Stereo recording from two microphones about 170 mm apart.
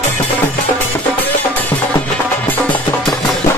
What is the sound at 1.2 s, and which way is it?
Music, 10° left (ahead or behind).